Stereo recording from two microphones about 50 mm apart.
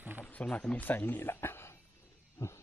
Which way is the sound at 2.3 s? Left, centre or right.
Left.